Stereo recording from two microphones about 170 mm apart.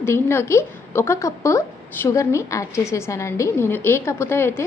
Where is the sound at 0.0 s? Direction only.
15° left (ahead or behind).